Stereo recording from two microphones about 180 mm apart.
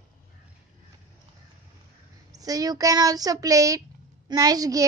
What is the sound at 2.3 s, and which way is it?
Speech, 20° right (ahead or behind).